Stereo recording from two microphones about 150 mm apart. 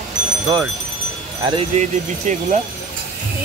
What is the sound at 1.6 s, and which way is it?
Speech, 50° right (ahead or behind).